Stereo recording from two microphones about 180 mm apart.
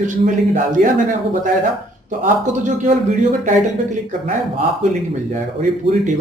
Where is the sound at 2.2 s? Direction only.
45° right (ahead or behind).